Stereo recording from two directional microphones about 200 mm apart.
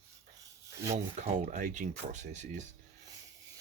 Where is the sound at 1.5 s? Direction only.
40° right (ahead or behind).